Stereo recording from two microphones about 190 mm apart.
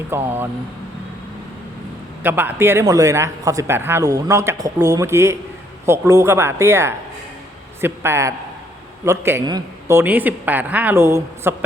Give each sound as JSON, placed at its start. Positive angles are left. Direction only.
{"t": 0.1, "sound": "speech", "side_deg": -10}
{"t": 2.2, "sound": "speech", "side_deg": -10}